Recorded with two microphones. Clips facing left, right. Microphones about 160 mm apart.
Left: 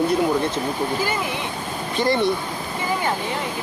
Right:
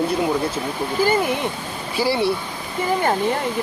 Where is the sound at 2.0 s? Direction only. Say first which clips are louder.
Even; 5° right (ahead or behind).